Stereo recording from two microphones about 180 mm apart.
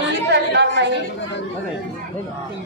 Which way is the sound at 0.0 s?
75° right (ahead or behind).